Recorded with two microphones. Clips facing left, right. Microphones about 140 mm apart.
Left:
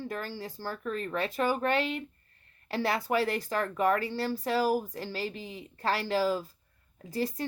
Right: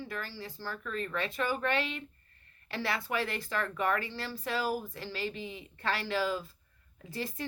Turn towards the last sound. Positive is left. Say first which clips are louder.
# left 6 dB
turn(degrees=40)  # may be behind; listen again after turning